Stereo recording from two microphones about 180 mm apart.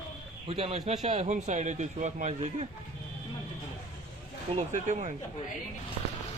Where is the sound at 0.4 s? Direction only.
35° right (ahead or behind).